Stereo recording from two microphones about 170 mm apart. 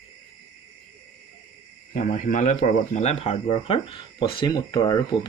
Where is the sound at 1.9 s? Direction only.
45° left (ahead or behind); by 4.9 s 25° left (ahead or behind).